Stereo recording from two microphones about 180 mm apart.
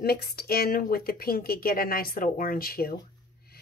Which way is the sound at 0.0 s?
60° left (ahead or behind).